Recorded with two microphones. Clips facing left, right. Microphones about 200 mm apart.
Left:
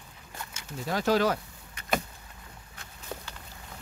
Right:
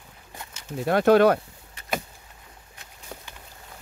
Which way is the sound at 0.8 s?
60° right (ahead or behind).